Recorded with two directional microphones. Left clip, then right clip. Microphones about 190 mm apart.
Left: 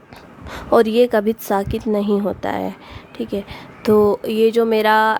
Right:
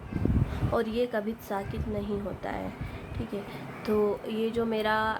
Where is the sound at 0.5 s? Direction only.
60° left (ahead or behind).